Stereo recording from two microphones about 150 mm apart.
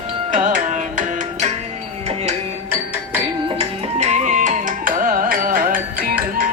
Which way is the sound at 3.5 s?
50° right (ahead or behind).